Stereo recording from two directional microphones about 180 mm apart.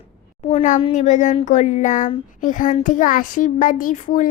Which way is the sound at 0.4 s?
40° left (ahead or behind).